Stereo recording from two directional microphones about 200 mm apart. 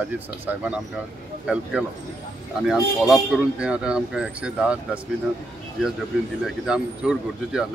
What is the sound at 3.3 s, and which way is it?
Speech, 5° right (ahead or behind).